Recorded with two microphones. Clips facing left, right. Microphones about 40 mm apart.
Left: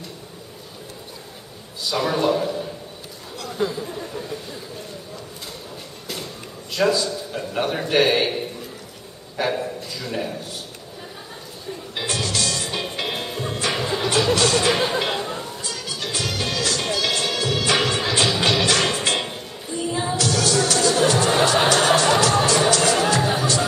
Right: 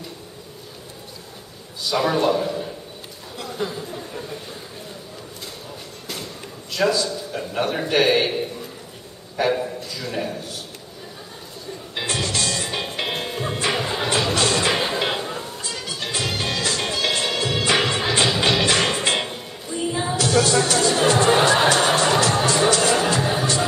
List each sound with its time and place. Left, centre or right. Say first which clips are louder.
1.9 s a man's voice: right 1 dB; centre
6.8 s a man's voice: left 1 dB; centre
11.9 s music: right 1 dB; centre
15.6 s music: even; centre
20.2 s music: right 3 dB; right; by 23.4 s centre